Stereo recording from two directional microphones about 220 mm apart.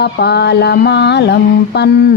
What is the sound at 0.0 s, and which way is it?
Mantra, 50° left (ahead or behind).